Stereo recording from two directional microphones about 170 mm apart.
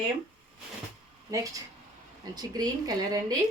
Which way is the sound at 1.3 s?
20° right (ahead or behind).